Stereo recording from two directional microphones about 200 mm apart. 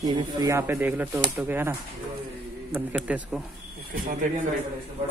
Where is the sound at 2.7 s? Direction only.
5° right (ahead or behind).